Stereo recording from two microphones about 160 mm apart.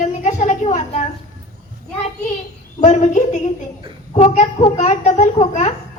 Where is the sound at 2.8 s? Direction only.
45° left (ahead or behind).